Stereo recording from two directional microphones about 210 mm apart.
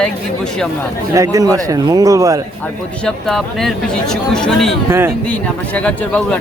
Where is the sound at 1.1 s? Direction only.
15° right (ahead or behind).